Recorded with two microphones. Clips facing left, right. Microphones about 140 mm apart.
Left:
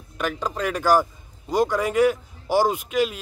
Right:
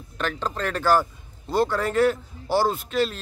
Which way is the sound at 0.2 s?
10° left (ahead or behind).